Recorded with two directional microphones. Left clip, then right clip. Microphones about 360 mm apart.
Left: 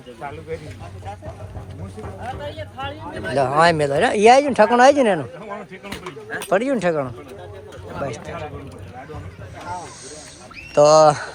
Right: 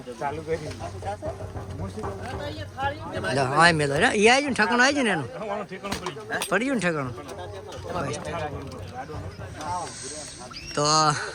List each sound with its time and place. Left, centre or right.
0.2 s speech: right
3.2 s speech: centre
5.5 s speech: right
6.5 s speech: centre
10.8 s speech: centre